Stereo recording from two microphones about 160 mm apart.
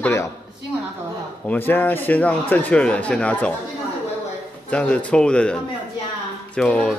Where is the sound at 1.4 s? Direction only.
10° left (ahead or behind).